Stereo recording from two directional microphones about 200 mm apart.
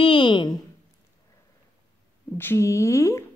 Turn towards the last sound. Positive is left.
turn(degrees=15)  # may be behind; listen again after turning